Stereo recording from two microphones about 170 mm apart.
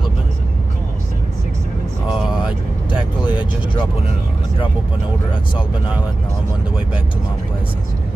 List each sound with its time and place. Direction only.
3.3 s vehicle: 30° left (ahead or behind)